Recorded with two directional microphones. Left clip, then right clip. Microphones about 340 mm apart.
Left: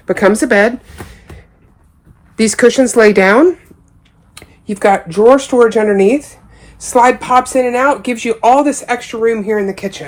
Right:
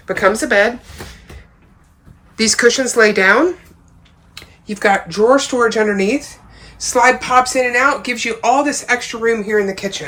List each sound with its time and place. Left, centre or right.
0.0 s speech: centre
2.3 s speech: centre